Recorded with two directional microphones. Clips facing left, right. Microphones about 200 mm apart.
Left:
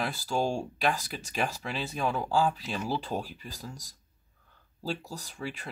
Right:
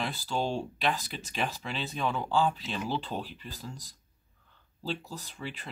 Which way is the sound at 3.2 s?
45° left (ahead or behind).